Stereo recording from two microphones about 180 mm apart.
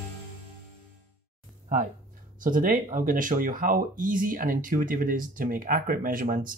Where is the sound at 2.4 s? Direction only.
50° right (ahead or behind).